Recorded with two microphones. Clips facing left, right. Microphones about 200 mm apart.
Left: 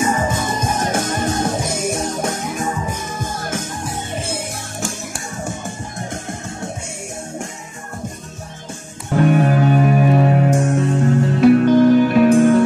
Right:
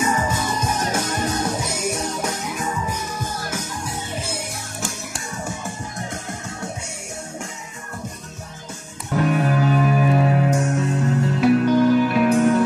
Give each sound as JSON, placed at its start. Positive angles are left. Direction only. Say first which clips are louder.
{"t": 0.0, "sound": "music", "louder": "left 3 dB", "side_deg": 30}
{"t": 0.3, "sound": "music", "louder": "left 3 dB", "side_deg": 50}
{"t": 2.8, "sound": "music", "louder": "left 2 dB", "side_deg": 25}
{"t": 3.2, "sound": "music", "louder": "left 3 dB", "side_deg": 50}
{"t": 9.1, "sound": "music", "louder": "left 5 dB", "side_deg": 35}
{"t": 11.0, "sound": "music", "louder": "left 6 dB", "side_deg": 45}
{"t": 11.6, "sound": "music", "louder": "left 5 dB", "side_deg": 25}